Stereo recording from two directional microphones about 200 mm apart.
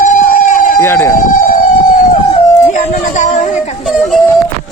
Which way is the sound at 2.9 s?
35° left (ahead or behind).